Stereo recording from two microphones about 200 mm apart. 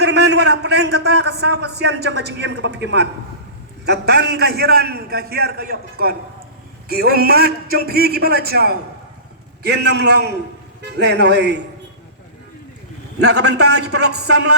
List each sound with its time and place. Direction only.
0.0 s a man's voice: 55° right (ahead or behind)
13.1 s a man's voice: 55° right (ahead or behind)